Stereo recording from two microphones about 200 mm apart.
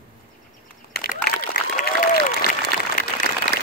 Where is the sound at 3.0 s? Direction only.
40° left (ahead or behind).